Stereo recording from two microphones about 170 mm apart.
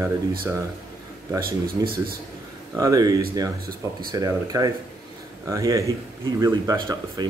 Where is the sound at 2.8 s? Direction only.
20° right (ahead or behind).